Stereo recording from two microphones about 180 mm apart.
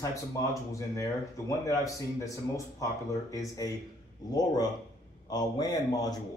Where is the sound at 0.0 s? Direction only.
20° left (ahead or behind).